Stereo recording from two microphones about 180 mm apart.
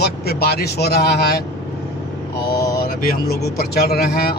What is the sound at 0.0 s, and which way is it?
Speech, 60° left (ahead or behind).